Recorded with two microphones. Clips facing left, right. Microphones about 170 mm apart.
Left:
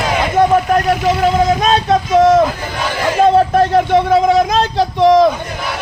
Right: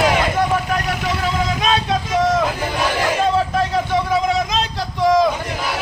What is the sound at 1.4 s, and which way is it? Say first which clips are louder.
Vehicle: left 6 dB; 45° left (ahead or behind).